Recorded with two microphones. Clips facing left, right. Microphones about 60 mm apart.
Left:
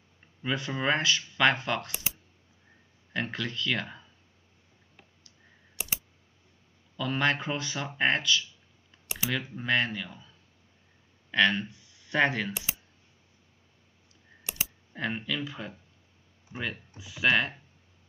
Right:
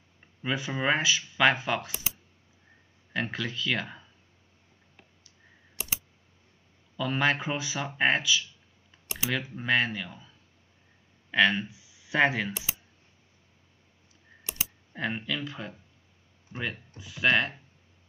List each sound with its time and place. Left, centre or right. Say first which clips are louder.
0.4 s speech: right 1 dB; centre
3.1 s speech: right 1 dB; centre
7.0 s speech: right 1 dB; centre
14.9 s speech: right 1 dB; centre